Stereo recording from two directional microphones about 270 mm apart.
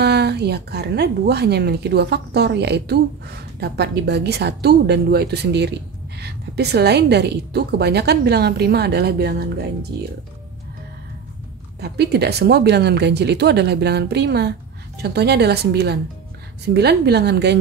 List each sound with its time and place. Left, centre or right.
0.0 s a woman's voice: right
11.8 s a woman's voice: right